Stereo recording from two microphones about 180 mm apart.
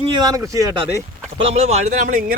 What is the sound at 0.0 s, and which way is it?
Speech, 25° right (ahead or behind).